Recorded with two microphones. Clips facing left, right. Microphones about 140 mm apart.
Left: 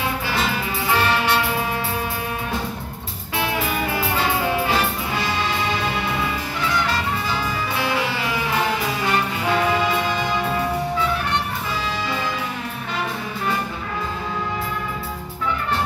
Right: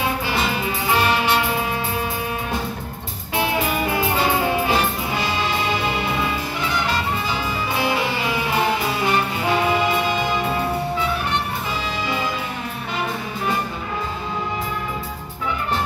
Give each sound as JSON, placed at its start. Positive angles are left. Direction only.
{"t": 0.3, "sound": "music", "side_deg": -20}
{"t": 3.3, "sound": "music", "side_deg": -20}